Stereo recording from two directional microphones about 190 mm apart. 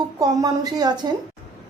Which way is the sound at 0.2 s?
20° right (ahead or behind).